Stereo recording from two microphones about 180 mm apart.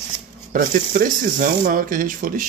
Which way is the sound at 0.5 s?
50° right (ahead or behind).